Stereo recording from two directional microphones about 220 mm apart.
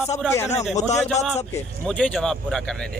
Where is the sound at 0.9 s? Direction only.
30° left (ahead or behind).